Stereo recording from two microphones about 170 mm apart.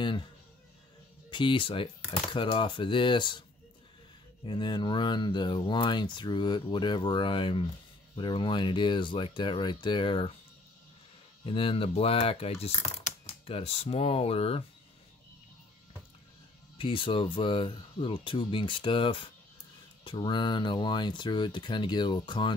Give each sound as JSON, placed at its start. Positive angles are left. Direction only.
{"t": 1.3, "sound": "speech", "side_deg": 30}
{"t": 4.5, "sound": "speech", "side_deg": 25}
{"t": 11.4, "sound": "speech", "side_deg": 30}
{"t": 16.7, "sound": "speech", "side_deg": 30}